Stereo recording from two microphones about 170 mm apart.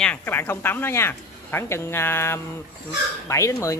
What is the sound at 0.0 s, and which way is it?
Speech, 10° left (ahead or behind).